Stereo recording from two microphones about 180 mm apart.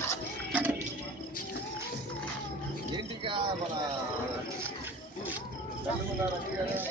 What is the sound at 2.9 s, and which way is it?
Vehicle, 25° right (ahead or behind).